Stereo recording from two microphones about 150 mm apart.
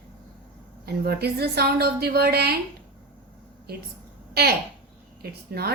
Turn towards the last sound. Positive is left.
turn(degrees=-90)